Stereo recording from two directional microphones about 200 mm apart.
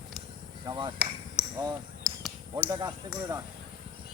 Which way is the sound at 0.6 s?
25° right (ahead or behind).